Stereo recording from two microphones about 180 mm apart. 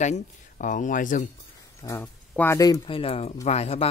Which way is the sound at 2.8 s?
30° left (ahead or behind).